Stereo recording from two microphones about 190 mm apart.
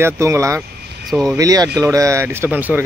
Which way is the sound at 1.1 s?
Centre (ahead or behind).